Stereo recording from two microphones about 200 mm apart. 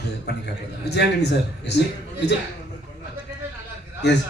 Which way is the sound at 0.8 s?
55° left (ahead or behind).